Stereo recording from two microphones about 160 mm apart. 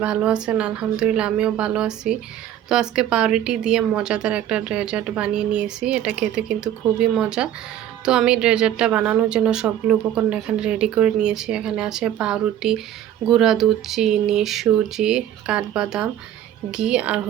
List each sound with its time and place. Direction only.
0.0 s a woman's voice: 5° right (ahead or behind)